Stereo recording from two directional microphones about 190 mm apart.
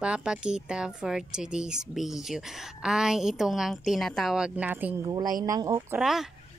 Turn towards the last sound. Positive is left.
turn(degrees=0)  # may be behind; listen again after turning